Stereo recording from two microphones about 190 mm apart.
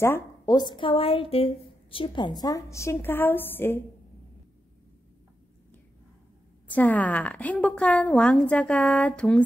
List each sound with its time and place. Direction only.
0.0 s a woman's voice: 15° left (ahead or behind)
6.7 s a woman's voice: 10° left (ahead or behind)